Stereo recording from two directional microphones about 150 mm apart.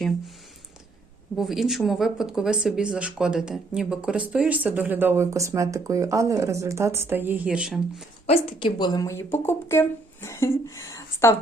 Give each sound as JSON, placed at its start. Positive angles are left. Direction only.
{"t": 1.4, "sound": "speech", "side_deg": -5}
{"t": 8.3, "sound": "a woman's voice", "side_deg": 40}